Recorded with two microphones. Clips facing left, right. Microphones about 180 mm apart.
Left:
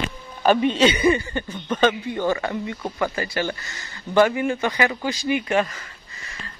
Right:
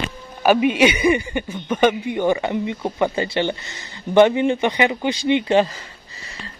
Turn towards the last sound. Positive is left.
turn(degrees=-25)  # may be behind; listen again after turning